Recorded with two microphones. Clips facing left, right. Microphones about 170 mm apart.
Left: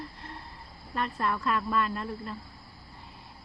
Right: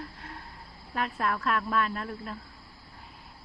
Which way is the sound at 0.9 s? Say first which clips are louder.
Even; centre (ahead or behind).